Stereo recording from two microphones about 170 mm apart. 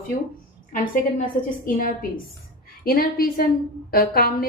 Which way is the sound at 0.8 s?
55° left (ahead or behind).